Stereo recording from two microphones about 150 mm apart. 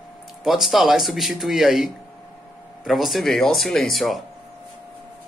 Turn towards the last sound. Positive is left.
turn(degrees=0)  # may be behind; listen again after turning